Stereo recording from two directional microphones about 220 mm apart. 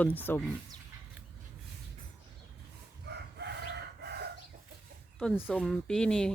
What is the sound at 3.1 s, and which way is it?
Chicken, 50° right (ahead or behind).